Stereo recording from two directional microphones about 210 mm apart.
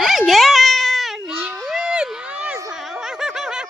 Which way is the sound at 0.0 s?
Centre (ahead or behind).